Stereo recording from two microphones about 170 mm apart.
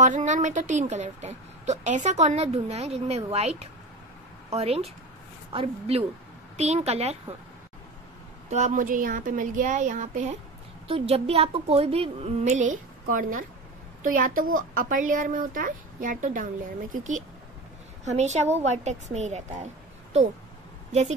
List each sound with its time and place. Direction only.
0.0 s a woman's voice: 45° right (ahead or behind)
8.5 s a woman's voice: 45° right (ahead or behind)
10.9 s a woman's voice: 35° right (ahead or behind)